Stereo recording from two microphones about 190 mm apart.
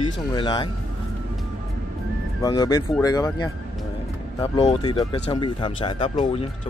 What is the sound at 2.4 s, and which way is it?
Speech, 20° left (ahead or behind).